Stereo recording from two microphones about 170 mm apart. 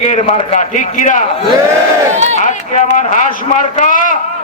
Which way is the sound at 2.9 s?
45° left (ahead or behind).